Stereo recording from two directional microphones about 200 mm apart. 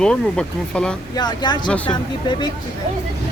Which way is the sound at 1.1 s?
20° left (ahead or behind).